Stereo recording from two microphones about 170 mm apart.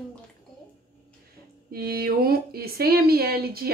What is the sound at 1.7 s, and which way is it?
Speech, 65° right (ahead or behind).